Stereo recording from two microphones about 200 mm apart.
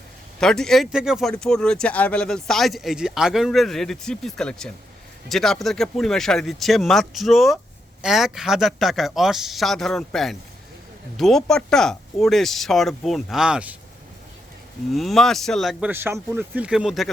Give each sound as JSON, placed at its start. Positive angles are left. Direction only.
{"t": 0.3, "sound": "speech", "side_deg": 5}
{"t": 14.9, "sound": "speech", "side_deg": 0}
{"t": 15.9, "sound": "speech", "side_deg": -10}